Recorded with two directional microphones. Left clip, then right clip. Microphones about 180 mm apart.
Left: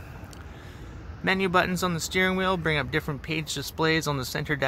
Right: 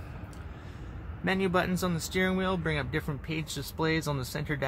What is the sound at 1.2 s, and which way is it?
Speech, 25° left (ahead or behind).